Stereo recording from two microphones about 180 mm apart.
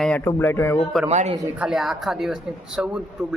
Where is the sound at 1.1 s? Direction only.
40° right (ahead or behind).